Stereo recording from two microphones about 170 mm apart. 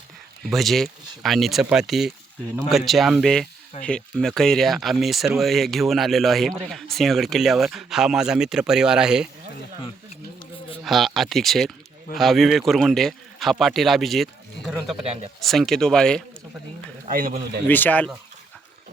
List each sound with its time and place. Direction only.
0.4 s speech: centre (ahead or behind)
10.8 s speech: centre (ahead or behind)
17.1 s a man's voice: 55° right (ahead or behind)
17.7 s speech: 10° left (ahead or behind)